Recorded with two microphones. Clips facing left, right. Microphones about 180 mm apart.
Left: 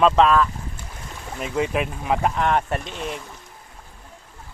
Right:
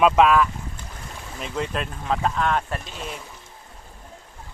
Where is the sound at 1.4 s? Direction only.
10° left (ahead or behind).